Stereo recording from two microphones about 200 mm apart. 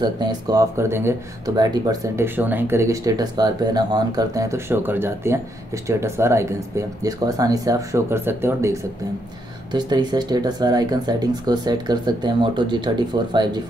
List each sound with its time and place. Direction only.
0.0 s speech: 20° right (ahead or behind)